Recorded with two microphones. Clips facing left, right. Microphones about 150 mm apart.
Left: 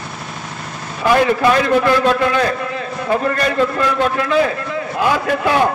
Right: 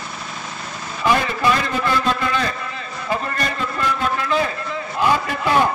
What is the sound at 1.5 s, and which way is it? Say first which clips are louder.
A man's voice: left 7 dB; 70° left (ahead or behind).